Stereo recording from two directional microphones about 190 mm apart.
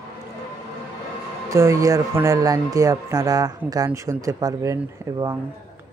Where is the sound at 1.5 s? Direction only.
15° right (ahead or behind).